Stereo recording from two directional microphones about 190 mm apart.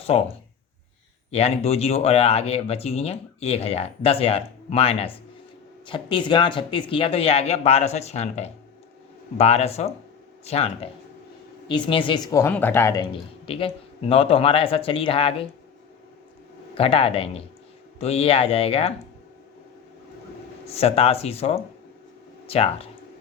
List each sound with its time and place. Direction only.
0.1 s speech: 35° left (ahead or behind)
1.3 s speech: 30° left (ahead or behind)
12.3 s speech: 10° left (ahead or behind)
13.5 s speech: 30° left (ahead or behind)
16.7 s speech: 30° left (ahead or behind)
20.7 s speech: 30° left (ahead or behind)